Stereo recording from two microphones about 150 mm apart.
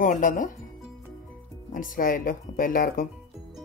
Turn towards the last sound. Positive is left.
turn(degrees=65)  # may be behind; listen again after turning